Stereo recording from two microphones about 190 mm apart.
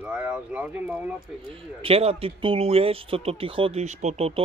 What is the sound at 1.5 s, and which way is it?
Speech, 30° right (ahead or behind).